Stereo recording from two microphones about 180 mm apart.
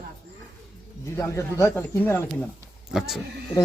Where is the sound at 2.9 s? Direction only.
Centre (ahead or behind).